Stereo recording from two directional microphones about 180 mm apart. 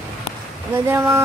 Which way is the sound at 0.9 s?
15° right (ahead or behind).